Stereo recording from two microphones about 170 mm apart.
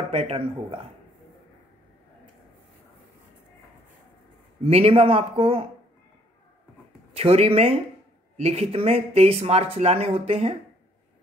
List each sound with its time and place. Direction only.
0.1 s speech: 35° right (ahead or behind)
4.6 s speech: 35° right (ahead or behind)
7.2 s speech: 35° right (ahead or behind)